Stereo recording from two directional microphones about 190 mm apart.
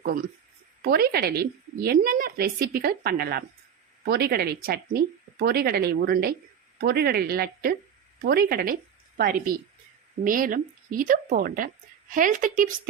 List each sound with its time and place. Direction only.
0.0 s a woman's voice: 50° right (ahead or behind)